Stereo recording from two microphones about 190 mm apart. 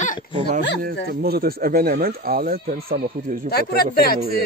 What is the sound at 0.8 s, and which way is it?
Speech, 55° right (ahead or behind).